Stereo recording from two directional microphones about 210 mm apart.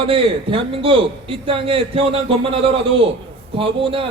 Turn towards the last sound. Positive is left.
turn(degrees=-25)  # may be behind; listen again after turning